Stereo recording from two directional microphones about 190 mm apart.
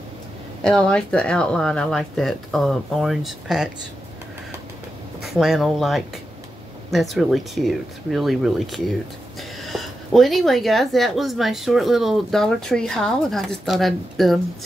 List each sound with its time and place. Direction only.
0.7 s speech: 5° left (ahead or behind)
5.2 s speech: centre (ahead or behind)